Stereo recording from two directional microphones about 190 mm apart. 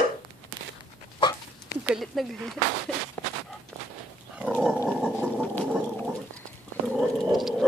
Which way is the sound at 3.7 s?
Centre (ahead or behind).